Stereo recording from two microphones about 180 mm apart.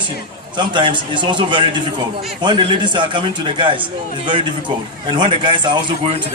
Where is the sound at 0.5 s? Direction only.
25° right (ahead or behind).